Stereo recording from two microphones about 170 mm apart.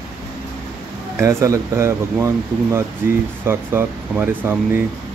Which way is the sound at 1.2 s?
15° right (ahead or behind).